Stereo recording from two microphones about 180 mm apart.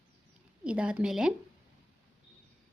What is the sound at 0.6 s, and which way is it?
Speech, 5° right (ahead or behind).